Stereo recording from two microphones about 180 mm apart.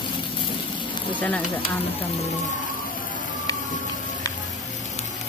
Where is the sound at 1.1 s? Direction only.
10° left (ahead or behind).